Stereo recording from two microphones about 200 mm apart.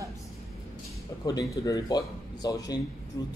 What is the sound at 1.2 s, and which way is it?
Speech, 20° left (ahead or behind).